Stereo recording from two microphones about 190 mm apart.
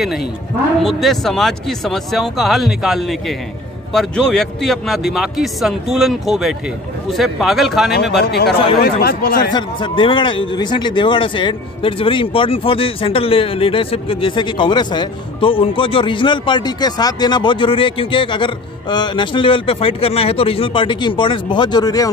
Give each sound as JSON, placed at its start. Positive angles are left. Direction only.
{"t": 0.8, "sound": "speech", "side_deg": 0}
{"t": 8.2, "sound": "speech", "side_deg": 60}
{"t": 9.5, "sound": "speech", "side_deg": 25}